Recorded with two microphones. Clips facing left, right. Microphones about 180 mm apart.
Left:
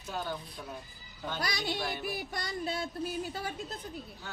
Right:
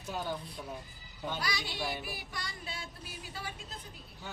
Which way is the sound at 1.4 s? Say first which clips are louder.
Left 6 dB; 45° left (ahead or behind).